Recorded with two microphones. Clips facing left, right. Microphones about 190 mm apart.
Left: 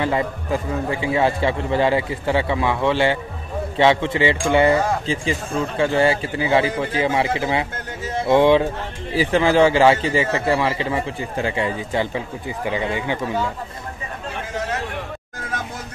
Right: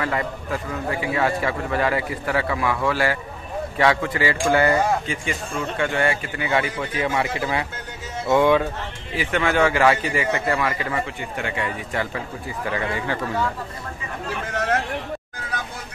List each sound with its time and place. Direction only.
0.0 s a man's voice: 25° left (ahead or behind)